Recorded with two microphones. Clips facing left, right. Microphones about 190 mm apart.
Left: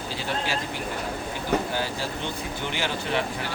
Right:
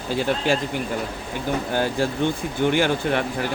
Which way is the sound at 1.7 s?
50° right (ahead or behind).